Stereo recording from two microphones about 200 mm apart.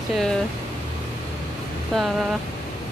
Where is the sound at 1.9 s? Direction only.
Centre (ahead or behind).